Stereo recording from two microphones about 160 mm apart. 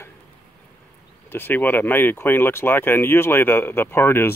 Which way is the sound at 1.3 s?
10° left (ahead or behind).